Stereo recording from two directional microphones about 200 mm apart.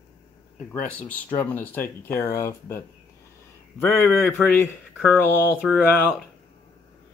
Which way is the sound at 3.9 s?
5° left (ahead or behind).